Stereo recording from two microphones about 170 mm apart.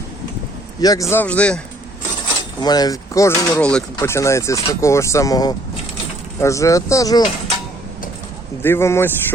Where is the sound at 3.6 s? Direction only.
5° left (ahead or behind).